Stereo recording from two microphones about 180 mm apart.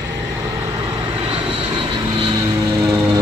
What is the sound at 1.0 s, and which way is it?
Vehicle, 30° right (ahead or behind).